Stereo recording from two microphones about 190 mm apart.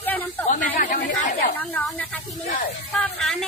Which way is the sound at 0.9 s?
55° left (ahead or behind).